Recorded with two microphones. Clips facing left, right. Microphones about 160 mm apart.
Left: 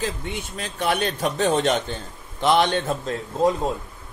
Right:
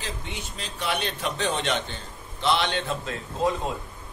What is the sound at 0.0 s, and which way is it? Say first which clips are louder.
A man's voice: left 7 dB; 55° left (ahead or behind).